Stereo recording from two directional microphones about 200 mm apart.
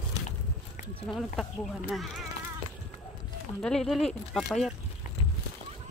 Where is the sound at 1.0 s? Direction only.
Centre (ahead or behind).